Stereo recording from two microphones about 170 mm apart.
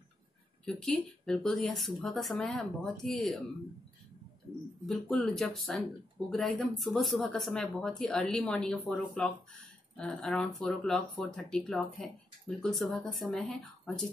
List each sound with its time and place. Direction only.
0.7 s speech: 5° left (ahead or behind)
4.8 s speech: centre (ahead or behind)